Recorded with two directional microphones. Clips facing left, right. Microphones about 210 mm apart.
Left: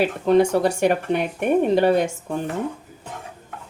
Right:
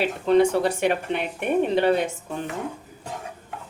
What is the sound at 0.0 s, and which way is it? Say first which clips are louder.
Speech: left 2 dB; 45° left (ahead or behind).